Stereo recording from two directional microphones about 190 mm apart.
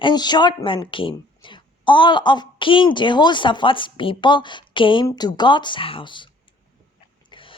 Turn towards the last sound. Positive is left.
turn(degrees=25)  # may be behind; listen again after turning